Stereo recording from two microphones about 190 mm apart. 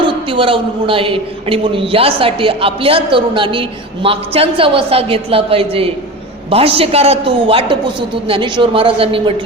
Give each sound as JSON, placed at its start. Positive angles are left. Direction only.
{"t": 0.0, "sound": "a man's voice", "side_deg": -25}